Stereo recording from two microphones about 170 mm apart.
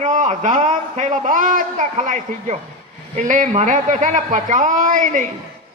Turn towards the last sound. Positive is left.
turn(degrees=-50)  # may be behind; listen again after turning